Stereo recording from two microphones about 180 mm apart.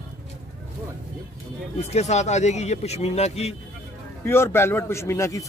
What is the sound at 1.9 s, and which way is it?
A man's voice, 40° left (ahead or behind).